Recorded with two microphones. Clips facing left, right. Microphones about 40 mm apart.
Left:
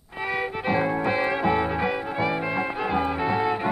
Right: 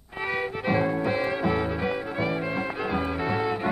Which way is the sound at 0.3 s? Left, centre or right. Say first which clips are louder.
Left 1 dB; centre.